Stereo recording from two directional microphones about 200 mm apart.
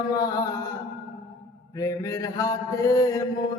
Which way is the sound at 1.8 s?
15° left (ahead or behind).